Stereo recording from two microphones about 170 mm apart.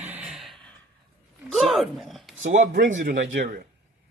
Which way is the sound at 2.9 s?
65° right (ahead or behind).